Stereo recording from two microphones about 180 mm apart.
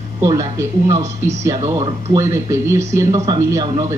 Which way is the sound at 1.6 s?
30° right (ahead or behind).